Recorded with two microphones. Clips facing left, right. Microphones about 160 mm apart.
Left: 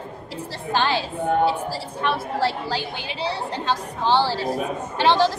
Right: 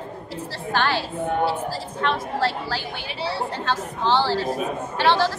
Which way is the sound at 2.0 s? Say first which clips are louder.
Even; 15° left (ahead or behind).